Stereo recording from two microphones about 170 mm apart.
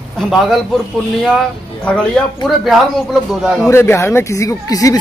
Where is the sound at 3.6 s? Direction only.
15° left (ahead or behind).